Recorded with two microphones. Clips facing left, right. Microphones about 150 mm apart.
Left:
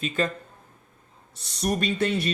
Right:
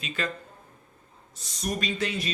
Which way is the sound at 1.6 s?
60° left (ahead or behind).